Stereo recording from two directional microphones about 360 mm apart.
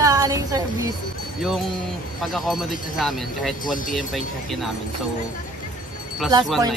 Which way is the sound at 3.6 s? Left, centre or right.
Left.